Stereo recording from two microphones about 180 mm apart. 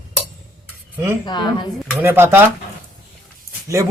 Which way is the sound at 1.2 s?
25° left (ahead or behind).